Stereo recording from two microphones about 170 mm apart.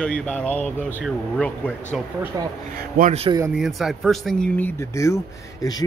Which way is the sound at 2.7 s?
60° right (ahead or behind).